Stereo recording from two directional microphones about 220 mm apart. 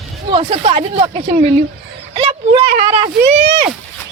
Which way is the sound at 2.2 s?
25° right (ahead or behind).